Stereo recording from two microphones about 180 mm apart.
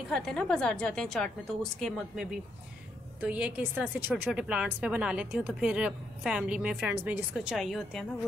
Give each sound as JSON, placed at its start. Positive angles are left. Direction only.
{"t": 0.1, "sound": "a woman's voice", "side_deg": 0}